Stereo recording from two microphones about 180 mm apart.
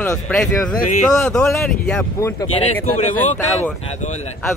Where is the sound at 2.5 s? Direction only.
30° left (ahead or behind).